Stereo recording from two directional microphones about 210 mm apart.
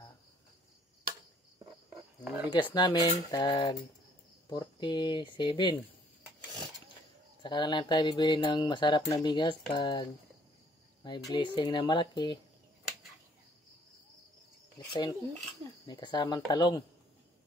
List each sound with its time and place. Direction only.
2.2 s a sound: 10° right (ahead or behind)
2.6 s speech: 20° left (ahead or behind)
7.4 s speech: 20° left (ahead or behind)
11.1 s speech: 20° left (ahead or behind)
14.9 s speech: 20° left (ahead or behind)